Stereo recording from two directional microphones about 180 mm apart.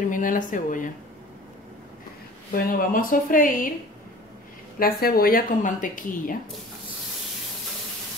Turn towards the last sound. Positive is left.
turn(degrees=45)  # may be behind; listen again after turning